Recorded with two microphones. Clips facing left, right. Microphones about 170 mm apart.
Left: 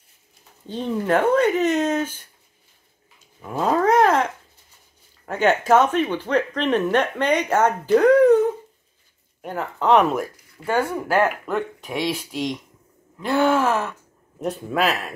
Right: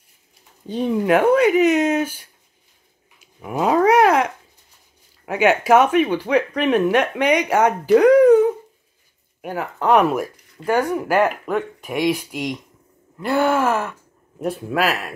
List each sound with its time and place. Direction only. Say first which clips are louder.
0.7 s speech: right 4 dB; 10° right (ahead or behind)
9.4 s speech: right 1 dB; 10° right (ahead or behind)